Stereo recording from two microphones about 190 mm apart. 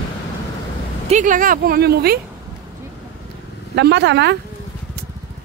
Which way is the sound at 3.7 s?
65° right (ahead or behind).